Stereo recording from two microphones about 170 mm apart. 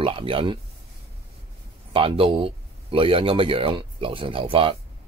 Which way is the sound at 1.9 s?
30° right (ahead or behind).